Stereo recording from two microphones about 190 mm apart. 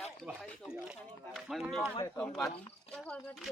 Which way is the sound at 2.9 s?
5° left (ahead or behind).